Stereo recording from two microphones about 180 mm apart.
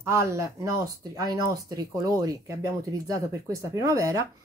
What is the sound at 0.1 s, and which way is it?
Speech, 15° right (ahead or behind).